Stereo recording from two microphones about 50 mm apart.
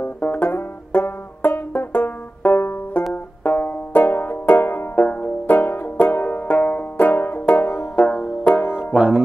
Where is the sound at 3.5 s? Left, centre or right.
Left.